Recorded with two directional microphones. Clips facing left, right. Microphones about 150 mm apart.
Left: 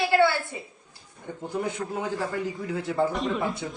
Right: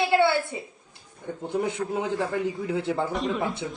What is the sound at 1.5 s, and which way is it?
A man's voice, 25° right (ahead or behind).